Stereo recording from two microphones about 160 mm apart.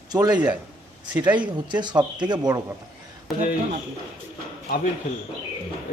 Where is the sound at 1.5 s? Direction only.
30° right (ahead or behind).